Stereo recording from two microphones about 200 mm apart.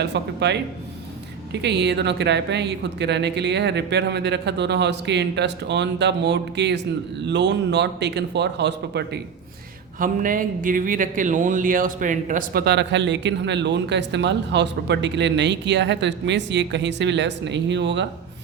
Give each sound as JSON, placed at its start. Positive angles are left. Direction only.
{"t": 0.0, "sound": "a man's voice", "side_deg": -60}
{"t": 1.6, "sound": "a man's voice", "side_deg": -60}
{"t": 10.0, "sound": "a man's voice", "side_deg": -40}